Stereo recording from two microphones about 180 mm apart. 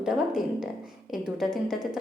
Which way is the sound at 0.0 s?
5° right (ahead or behind).